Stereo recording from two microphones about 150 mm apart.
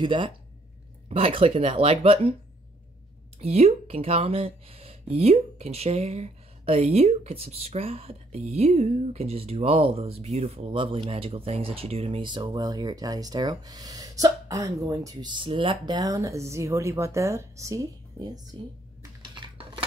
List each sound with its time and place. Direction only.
0.0 s speech: 35° right (ahead or behind)
3.3 s speech: 45° right (ahead or behind); by 18.4 s 25° right (ahead or behind)
19.2 s a sound: 30° right (ahead or behind)